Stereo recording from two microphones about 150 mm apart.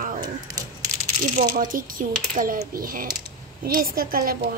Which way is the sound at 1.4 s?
65° right (ahead or behind).